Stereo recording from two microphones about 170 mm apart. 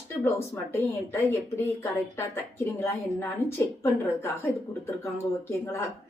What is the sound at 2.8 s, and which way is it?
A woman's voice, 15° left (ahead or behind).